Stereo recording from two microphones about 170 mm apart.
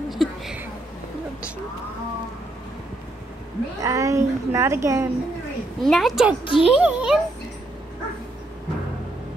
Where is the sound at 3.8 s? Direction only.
20° right (ahead or behind).